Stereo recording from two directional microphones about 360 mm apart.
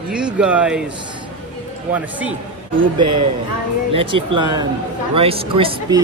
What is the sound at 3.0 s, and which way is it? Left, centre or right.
Speech, right.